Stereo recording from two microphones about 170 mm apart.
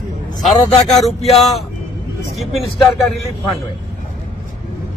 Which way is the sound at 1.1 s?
35° left (ahead or behind).